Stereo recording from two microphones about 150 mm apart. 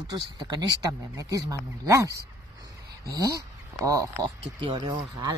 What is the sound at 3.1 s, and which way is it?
Speech, 20° right (ahead or behind).